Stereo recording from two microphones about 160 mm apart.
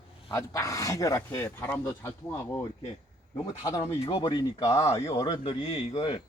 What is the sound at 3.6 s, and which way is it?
Speech, 20° left (ahead or behind).